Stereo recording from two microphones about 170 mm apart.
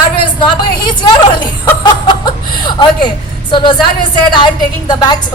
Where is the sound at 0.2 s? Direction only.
30° left (ahead or behind).